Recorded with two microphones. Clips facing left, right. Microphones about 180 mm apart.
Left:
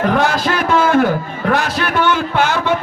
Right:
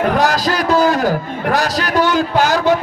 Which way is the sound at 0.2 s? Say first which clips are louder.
Right 1 dB; 40° right (ahead or behind).